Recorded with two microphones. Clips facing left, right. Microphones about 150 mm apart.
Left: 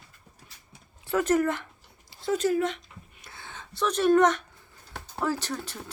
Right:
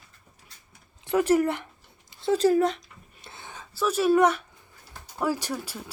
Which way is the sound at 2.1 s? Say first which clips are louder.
Right 4 dB; 30° right (ahead or behind).